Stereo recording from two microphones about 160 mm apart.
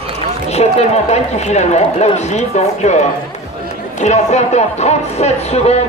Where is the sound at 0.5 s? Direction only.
45° left (ahead or behind).